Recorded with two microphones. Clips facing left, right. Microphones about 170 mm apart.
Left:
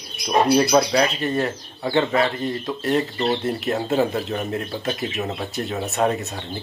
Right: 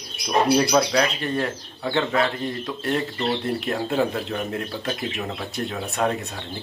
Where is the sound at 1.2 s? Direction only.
Centre (ahead or behind).